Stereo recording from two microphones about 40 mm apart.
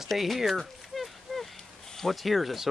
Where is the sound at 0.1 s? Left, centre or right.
Centre.